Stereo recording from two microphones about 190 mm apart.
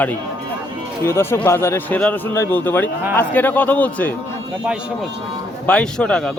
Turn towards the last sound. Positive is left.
turn(degrees=5)  # may be behind; listen again after turning